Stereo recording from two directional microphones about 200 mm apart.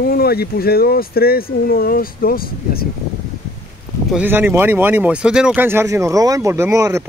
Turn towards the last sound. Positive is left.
turn(degrees=-15)  # may be behind; listen again after turning